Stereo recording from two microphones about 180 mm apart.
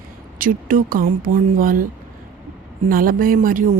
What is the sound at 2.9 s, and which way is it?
Speech, 50° right (ahead or behind).